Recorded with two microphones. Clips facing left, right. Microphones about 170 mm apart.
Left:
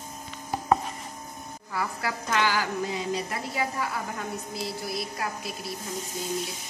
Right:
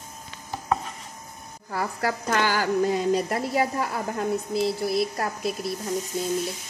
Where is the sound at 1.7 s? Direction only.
45° right (ahead or behind).